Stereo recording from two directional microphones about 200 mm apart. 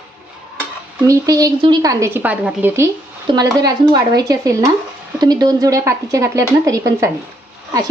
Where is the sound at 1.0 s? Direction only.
15° right (ahead or behind).